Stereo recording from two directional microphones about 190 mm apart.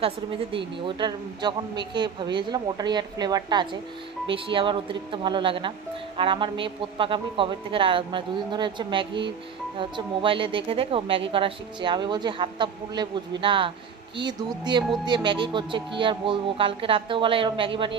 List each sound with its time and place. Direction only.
0.0 s a woman's voice: 30° right (ahead or behind)